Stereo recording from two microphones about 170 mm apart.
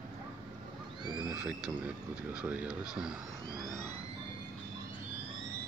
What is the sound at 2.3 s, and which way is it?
Speech, 10° right (ahead or behind).